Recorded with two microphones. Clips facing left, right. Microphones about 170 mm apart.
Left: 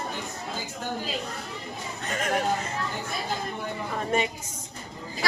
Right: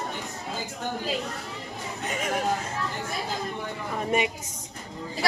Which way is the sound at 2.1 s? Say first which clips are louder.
Left 2 dB; 5° right (ahead or behind).